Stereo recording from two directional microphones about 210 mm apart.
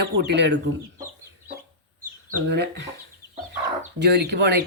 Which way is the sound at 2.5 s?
55° right (ahead or behind).